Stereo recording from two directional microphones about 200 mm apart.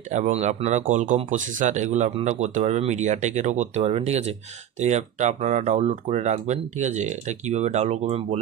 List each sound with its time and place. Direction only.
0.1 s speech: 35° right (ahead or behind)